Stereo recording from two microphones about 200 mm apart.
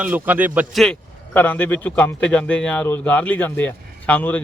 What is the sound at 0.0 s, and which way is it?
Speech, 10° right (ahead or behind).